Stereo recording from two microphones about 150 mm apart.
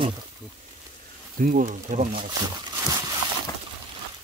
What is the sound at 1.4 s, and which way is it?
Speech, 65° right (ahead or behind).